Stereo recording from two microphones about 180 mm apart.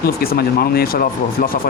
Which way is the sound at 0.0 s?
60° left (ahead or behind).